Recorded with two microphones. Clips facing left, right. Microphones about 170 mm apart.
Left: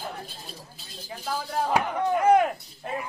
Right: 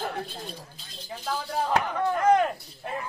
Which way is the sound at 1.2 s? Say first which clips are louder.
Left 1 dB; 10° left (ahead or behind).